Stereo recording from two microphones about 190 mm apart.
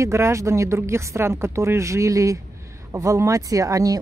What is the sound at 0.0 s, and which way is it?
Speech, 15° right (ahead or behind).